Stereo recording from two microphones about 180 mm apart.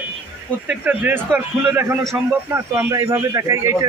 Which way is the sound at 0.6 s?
10° right (ahead or behind).